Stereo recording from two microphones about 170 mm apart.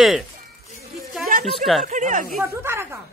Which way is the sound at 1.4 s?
Centre (ahead or behind).